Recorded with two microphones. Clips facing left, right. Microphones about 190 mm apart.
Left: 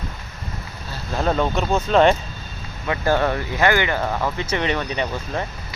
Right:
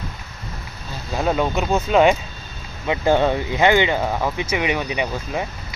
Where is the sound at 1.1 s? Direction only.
10° right (ahead or behind).